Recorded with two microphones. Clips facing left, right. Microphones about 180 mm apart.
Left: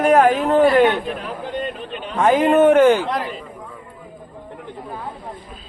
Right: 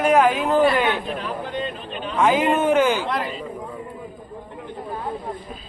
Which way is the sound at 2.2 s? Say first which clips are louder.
Left 5 dB; 55° left (ahead or behind).